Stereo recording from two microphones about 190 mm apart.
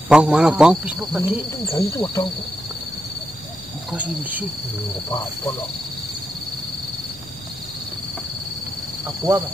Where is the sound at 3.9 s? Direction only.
10° right (ahead or behind).